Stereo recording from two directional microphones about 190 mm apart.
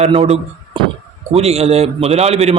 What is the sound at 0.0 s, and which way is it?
A man's voice, 35° right (ahead or behind).